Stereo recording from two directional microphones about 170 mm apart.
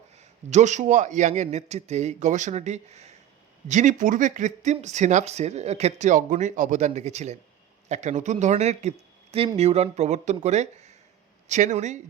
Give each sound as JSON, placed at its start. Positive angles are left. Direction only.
{"t": 0.5, "sound": "speech", "side_deg": -45}